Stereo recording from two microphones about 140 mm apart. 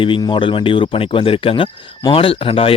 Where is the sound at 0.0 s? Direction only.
35° left (ahead or behind).